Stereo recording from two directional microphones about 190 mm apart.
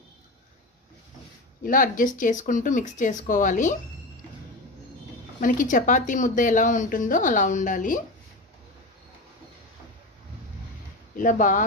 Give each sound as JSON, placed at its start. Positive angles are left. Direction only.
{"t": 1.6, "sound": "speech", "side_deg": 45}
{"t": 5.4, "sound": "speech", "side_deg": 45}
{"t": 11.1, "sound": "speech", "side_deg": 45}